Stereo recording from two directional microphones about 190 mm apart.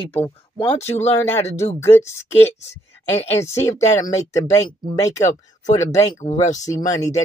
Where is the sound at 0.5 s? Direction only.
30° left (ahead or behind).